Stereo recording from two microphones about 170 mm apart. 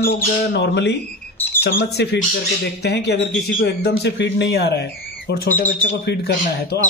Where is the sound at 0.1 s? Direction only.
70° left (ahead or behind).